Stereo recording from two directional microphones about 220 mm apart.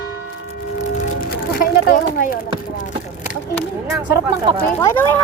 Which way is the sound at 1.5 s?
40° left (ahead or behind).